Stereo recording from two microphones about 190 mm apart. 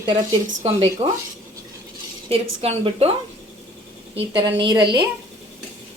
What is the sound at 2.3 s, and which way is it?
Speech, 30° right (ahead or behind).